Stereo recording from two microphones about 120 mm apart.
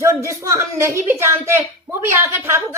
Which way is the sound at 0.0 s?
25° right (ahead or behind).